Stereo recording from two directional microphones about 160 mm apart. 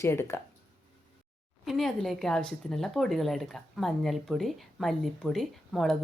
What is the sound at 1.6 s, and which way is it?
Speech, centre (ahead or behind).